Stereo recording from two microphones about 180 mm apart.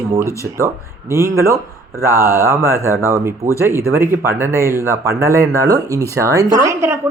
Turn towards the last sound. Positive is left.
turn(degrees=-15)  # may be behind; listen again after turning